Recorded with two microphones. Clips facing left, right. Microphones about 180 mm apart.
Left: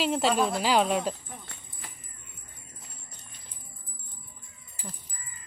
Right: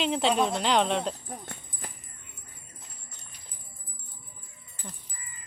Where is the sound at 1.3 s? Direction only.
45° right (ahead or behind).